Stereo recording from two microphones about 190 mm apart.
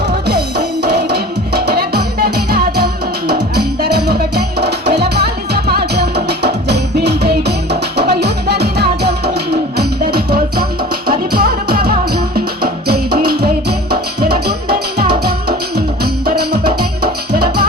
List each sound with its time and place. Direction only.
0.3 s music: 60° right (ahead or behind)